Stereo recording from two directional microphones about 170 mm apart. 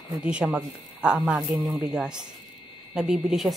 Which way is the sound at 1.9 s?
5° right (ahead or behind).